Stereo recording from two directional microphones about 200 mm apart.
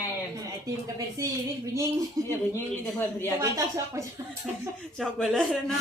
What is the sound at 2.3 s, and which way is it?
A woman's voice, 15° left (ahead or behind).